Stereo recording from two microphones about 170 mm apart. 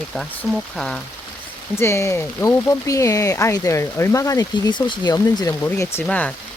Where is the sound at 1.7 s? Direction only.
15° left (ahead or behind).